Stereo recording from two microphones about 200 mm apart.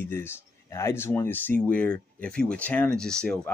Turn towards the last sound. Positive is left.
turn(degrees=5)  # may be behind; listen again after turning